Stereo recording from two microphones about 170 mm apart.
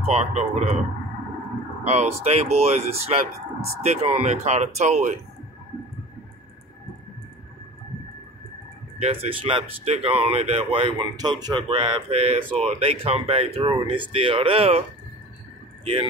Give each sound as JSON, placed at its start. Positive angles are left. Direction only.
{"t": 0.0, "sound": "speech", "side_deg": -40}
{"t": 1.9, "sound": "speech", "side_deg": -40}
{"t": 9.0, "sound": "speech", "side_deg": -35}
{"t": 15.8, "sound": "speech", "side_deg": -35}